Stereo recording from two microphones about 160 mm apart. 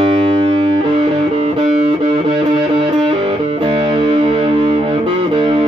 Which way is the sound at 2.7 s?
35° right (ahead or behind).